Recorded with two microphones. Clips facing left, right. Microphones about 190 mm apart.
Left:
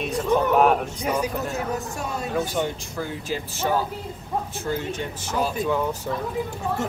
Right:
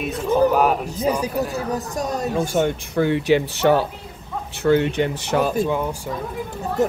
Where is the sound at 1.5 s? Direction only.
40° right (ahead or behind).